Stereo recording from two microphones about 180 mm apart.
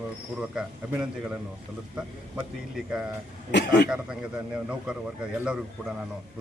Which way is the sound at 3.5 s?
70° left (ahead or behind).